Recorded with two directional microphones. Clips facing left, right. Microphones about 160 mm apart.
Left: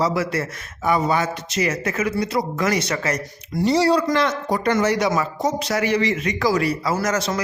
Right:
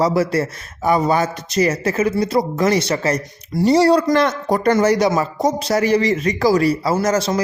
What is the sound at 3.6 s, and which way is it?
Speech, 45° right (ahead or behind).